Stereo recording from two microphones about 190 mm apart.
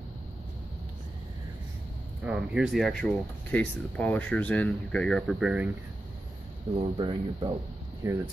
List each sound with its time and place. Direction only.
2.2 s speech: 5° right (ahead or behind)
6.7 s speech: 25° right (ahead or behind)